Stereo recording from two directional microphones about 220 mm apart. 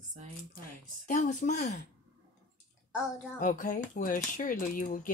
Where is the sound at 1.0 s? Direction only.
35° left (ahead or behind).